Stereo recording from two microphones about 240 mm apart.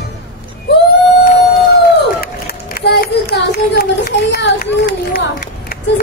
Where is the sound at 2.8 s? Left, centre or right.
Left.